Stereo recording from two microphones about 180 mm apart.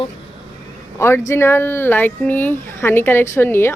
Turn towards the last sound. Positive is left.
turn(degrees=10)  # may be behind; listen again after turning